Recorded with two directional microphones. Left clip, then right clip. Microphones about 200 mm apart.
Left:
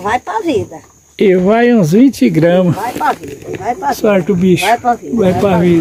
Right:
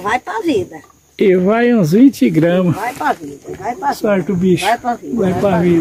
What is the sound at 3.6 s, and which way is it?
Speech, 20° left (ahead or behind).